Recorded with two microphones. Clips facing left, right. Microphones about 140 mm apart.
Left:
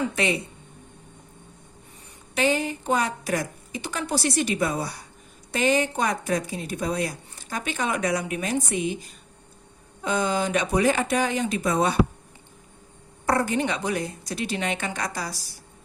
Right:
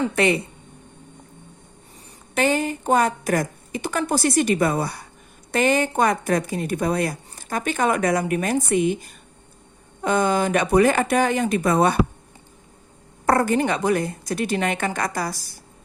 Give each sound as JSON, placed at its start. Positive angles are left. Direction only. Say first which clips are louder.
{"t": 2.3, "sound": "a woman's voice", "louder": "right 3 dB", "side_deg": -50}
{"t": 13.2, "sound": "a woman's voice", "louder": "right 4 dB", "side_deg": -50}